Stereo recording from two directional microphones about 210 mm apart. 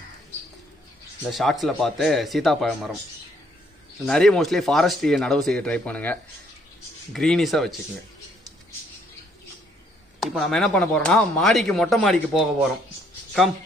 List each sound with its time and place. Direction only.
1.3 s speech: centre (ahead or behind)
4.0 s speech: 5° left (ahead or behind)
10.2 s speech: centre (ahead or behind)